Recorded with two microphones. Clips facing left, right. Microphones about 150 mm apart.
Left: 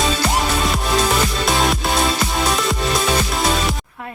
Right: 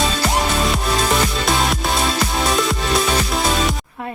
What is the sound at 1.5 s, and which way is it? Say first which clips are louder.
Music: left 1 dB; centre (ahead or behind).